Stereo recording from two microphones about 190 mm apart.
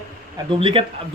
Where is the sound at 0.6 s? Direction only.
30° right (ahead or behind).